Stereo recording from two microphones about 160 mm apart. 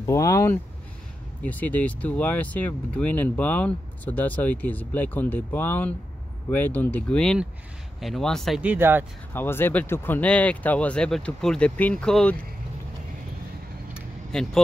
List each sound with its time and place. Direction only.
0.0 s speech: 20° left (ahead or behind); by 9.0 s 15° right (ahead or behind)
9.3 s speech: 15° left (ahead or behind)
14.3 s speech: 5° left (ahead or behind)